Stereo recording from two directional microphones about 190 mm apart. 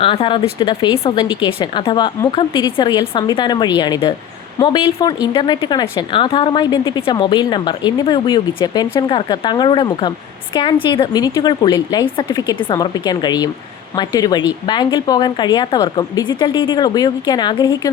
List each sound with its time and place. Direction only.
0.0 s a woman's voice: 25° left (ahead or behind)